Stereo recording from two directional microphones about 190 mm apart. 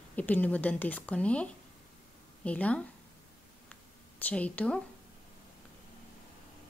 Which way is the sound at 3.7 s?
5° left (ahead or behind).